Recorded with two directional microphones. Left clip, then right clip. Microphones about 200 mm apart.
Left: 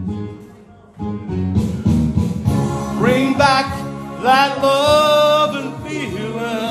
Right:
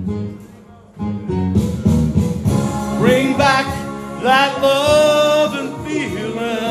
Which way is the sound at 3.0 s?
5° left (ahead or behind).